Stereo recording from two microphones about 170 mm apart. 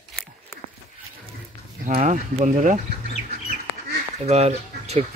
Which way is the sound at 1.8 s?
50° right (ahead or behind).